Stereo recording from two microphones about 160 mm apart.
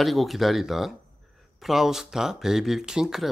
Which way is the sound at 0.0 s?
Centre (ahead or behind).